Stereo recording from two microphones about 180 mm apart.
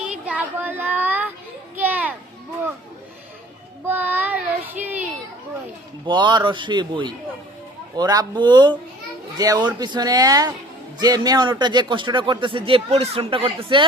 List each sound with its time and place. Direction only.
0.0 s child singing: 5° right (ahead or behind)
1.7 s children playing: 10° right (ahead or behind)
3.8 s child singing: 10° right (ahead or behind)
6.1 s speech: 25° right (ahead or behind)